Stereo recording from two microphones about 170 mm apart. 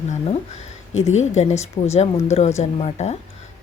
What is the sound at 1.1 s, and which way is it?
Speech, 40° left (ahead or behind).